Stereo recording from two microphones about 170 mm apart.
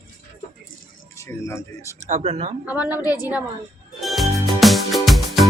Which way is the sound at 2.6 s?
10° right (ahead or behind).